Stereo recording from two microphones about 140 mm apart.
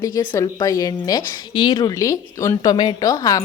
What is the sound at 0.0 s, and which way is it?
A woman's voice, 30° left (ahead or behind).